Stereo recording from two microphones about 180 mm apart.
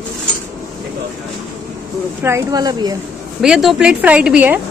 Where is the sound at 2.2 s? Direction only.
20° right (ahead or behind).